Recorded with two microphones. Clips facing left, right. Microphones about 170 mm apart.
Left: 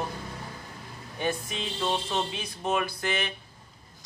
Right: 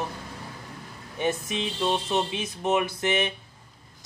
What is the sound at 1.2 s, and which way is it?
Speech, 20° right (ahead or behind).